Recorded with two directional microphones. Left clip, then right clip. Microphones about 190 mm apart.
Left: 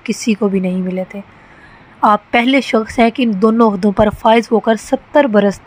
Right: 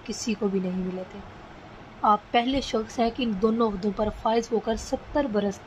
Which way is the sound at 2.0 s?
35° left (ahead or behind).